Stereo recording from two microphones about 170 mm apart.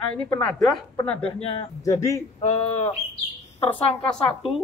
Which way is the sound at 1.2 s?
30° left (ahead or behind).